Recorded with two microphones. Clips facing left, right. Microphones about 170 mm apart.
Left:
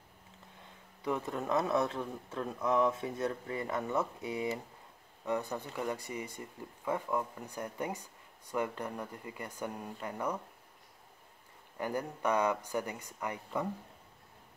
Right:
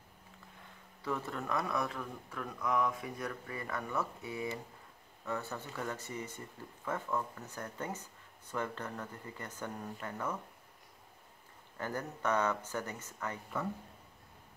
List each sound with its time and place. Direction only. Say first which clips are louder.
1.0 s speech: left 3 dB; 20° left (ahead or behind)
11.8 s speech: left 3 dB; 10° left (ahead or behind)